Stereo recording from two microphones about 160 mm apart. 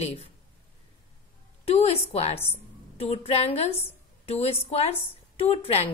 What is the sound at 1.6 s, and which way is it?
A woman's voice, 40° left (ahead or behind).